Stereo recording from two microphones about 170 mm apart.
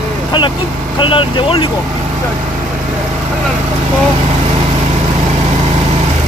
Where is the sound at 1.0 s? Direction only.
30° left (ahead or behind).